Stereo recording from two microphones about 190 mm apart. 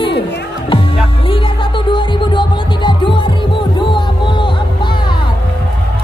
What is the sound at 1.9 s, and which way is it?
Music, 25° left (ahead or behind).